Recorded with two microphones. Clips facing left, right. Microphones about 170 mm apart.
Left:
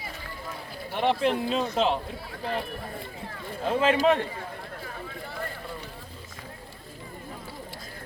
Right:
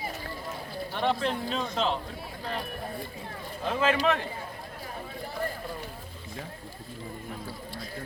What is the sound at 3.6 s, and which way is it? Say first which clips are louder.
Speech: left 3 dB; 25° left (ahead or behind).